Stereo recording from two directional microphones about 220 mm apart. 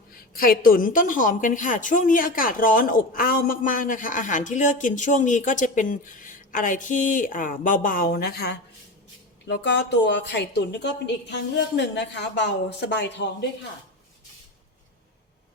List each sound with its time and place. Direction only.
0.3 s a woman's voice: 40° left (ahead or behind)